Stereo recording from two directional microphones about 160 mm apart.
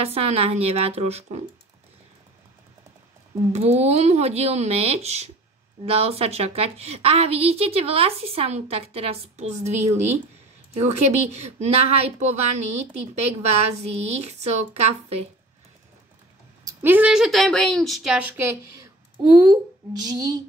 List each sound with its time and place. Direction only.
0.0 s a woman's voice: 40° right (ahead or behind)
3.5 s a woman's voice: 40° right (ahead or behind)
16.6 s speech: 10° right (ahead or behind)